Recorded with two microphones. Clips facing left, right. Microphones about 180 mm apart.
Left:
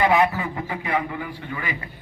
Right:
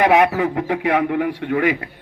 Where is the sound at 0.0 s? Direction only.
85° right.